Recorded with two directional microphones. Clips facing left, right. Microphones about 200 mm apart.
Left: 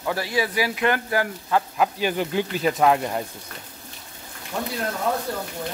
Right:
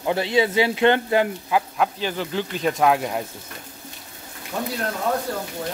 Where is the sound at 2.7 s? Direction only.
Centre (ahead or behind).